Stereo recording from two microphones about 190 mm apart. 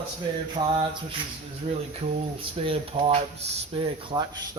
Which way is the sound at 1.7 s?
35° right (ahead or behind).